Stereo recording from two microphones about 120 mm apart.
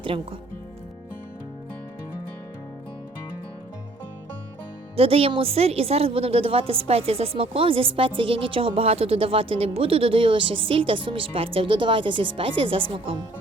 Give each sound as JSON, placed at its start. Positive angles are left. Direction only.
{"t": 0.0, "sound": "speech", "side_deg": -50}
{"t": 4.9, "sound": "a woman's voice", "side_deg": -55}